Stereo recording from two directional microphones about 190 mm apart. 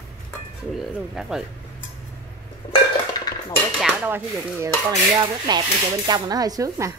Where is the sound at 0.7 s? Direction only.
Centre (ahead or behind).